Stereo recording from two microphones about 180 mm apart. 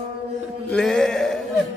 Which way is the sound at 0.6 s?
5° left (ahead or behind).